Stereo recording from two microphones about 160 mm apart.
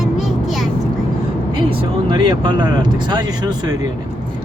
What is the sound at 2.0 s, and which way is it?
Speech, 30° right (ahead or behind).